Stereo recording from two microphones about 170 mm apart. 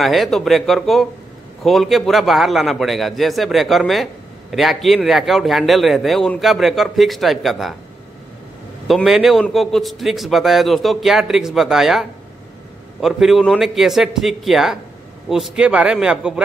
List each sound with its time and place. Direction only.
0.0 s a man's voice: centre (ahead or behind)
8.8 s a man's voice: centre (ahead or behind)